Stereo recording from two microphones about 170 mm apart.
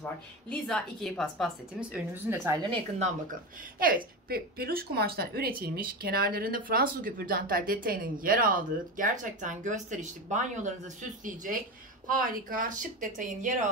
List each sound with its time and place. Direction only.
0.0 s a woman's voice: 5° left (ahead or behind)
1.8 s speech: 15° right (ahead or behind)
3.8 s speech: 60° right (ahead or behind)